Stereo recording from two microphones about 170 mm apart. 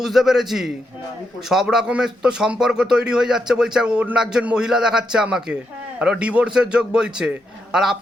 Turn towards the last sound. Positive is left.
turn(degrees=-5)  # may be behind; listen again after turning